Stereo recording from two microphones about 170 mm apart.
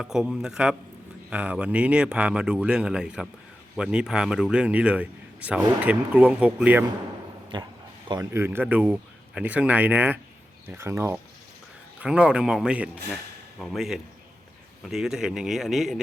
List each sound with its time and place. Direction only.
0.0 s a man's voice: 5° right (ahead or behind)
7.5 s a man's voice: 25° right (ahead or behind); by 16.0 s centre (ahead or behind)